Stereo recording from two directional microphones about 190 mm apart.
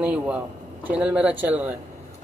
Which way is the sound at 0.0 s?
5° right (ahead or behind).